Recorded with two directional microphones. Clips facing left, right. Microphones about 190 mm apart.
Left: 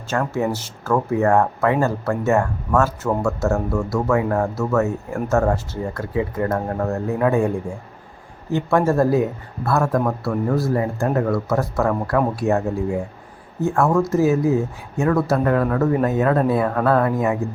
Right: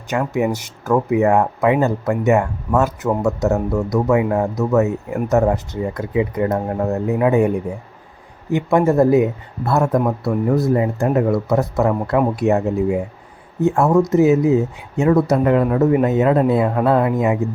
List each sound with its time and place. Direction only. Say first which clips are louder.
0.1 s speech: right 2 dB; 15° right (ahead or behind)